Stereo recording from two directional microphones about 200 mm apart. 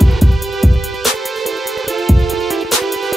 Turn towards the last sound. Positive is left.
turn(degrees=0)  # may be behind; listen again after turning